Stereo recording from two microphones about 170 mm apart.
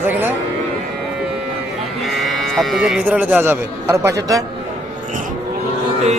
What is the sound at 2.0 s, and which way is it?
Speech, centre (ahead or behind).